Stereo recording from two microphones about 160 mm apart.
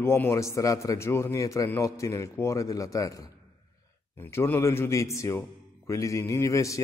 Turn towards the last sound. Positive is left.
turn(degrees=20)  # may be behind; listen again after turning